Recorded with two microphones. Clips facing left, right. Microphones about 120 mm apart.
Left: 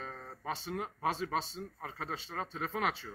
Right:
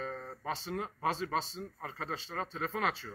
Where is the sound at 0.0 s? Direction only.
5° left (ahead or behind).